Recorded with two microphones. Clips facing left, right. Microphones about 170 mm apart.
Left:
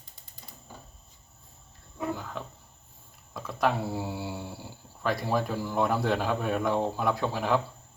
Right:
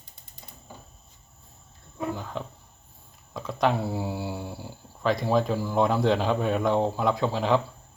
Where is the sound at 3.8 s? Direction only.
15° right (ahead or behind).